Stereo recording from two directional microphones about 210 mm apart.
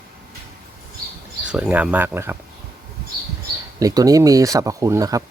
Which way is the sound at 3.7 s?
15° right (ahead or behind).